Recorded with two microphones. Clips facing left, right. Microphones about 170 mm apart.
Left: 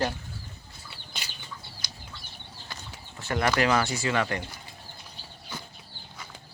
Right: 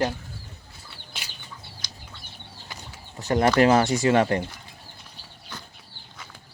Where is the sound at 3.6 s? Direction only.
40° right (ahead or behind).